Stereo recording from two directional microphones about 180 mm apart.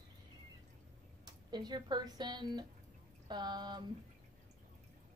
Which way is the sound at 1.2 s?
25° right (ahead or behind).